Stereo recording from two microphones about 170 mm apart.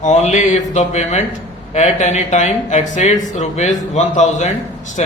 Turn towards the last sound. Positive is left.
turn(degrees=45)  # may be behind; listen again after turning